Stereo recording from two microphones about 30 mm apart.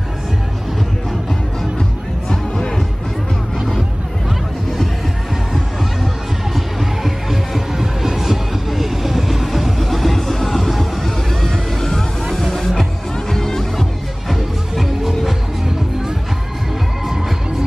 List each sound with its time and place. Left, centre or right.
2.2 s music: centre
6.5 s music: centre
7.8 s train: centre
8.6 s vehicle: centre
11.4 s music: centre
14.3 s music: centre